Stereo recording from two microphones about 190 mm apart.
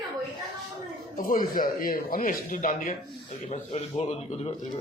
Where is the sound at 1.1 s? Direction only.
50° left (ahead or behind).